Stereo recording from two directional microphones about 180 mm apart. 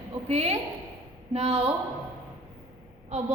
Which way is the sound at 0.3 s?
35° right (ahead or behind).